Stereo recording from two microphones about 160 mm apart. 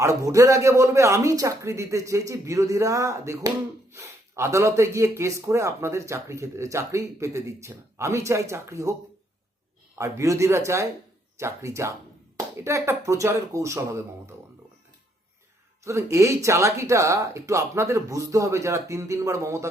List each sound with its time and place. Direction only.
0.0 s speech: 20° right (ahead or behind)
15.8 s speech: 20° right (ahead or behind)